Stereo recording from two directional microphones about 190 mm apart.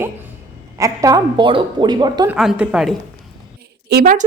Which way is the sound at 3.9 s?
50° right (ahead or behind).